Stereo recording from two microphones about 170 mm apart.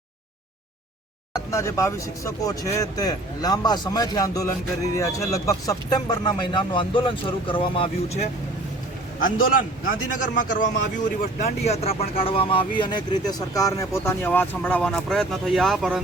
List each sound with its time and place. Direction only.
1.3 s speech: 15° left (ahead or behind); by 8.3 s 35° left (ahead or behind)
9.2 s a man's voice: 55° left (ahead or behind); by 16.0 s centre (ahead or behind)